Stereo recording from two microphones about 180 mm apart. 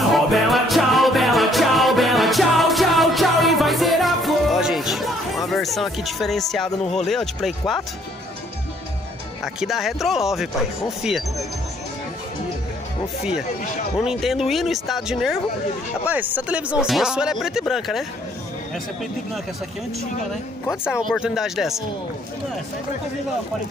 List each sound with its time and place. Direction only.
0.1 s music: centre (ahead or behind)
7.1 s speech: centre (ahead or behind)
9.4 s speech: centre (ahead or behind)
13.9 s speech: centre (ahead or behind)
21.1 s speech: centre (ahead or behind)